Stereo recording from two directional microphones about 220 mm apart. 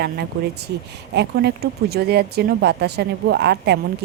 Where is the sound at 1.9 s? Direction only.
45° right (ahead or behind).